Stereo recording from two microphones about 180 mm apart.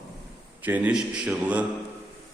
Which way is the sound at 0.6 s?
10° right (ahead or behind).